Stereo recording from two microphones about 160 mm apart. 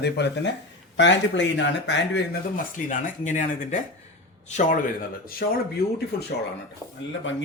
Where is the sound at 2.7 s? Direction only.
50° left (ahead or behind).